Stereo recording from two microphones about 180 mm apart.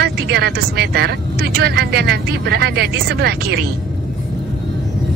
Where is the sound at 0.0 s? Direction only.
60° right (ahead or behind).